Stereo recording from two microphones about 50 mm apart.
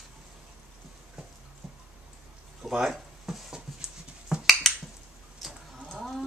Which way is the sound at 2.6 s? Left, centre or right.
Centre.